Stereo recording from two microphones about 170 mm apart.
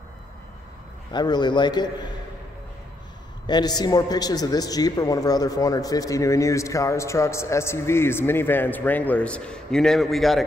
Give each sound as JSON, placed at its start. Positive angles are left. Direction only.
{"t": 1.1, "sound": "a man's voice", "side_deg": 25}
{"t": 3.4, "sound": "a man's voice", "side_deg": 25}